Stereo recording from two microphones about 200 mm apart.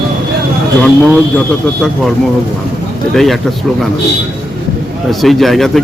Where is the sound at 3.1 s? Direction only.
Centre (ahead or behind).